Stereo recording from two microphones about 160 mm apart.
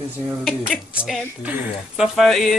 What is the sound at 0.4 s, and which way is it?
Speech, 5° right (ahead or behind).